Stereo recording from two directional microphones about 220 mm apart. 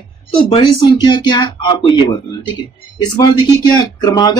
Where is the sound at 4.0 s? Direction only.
15° left (ahead or behind).